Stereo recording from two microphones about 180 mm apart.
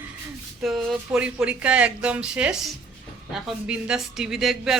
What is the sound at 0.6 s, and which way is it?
A man's voice, centre (ahead or behind).